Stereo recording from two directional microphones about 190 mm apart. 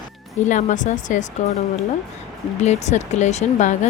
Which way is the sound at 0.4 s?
40° left (ahead or behind).